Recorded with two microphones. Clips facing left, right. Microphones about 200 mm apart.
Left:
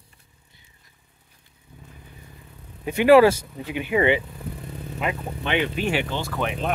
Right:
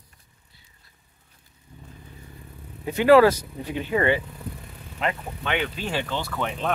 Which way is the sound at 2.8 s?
15° left (ahead or behind).